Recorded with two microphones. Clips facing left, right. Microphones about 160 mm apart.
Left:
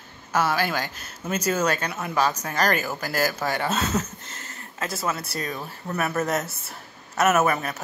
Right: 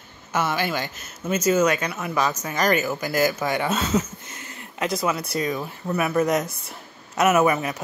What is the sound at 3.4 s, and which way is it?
Speech, 15° right (ahead or behind).